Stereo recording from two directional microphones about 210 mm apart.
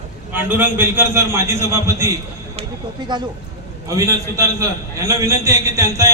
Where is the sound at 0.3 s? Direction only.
10° right (ahead or behind).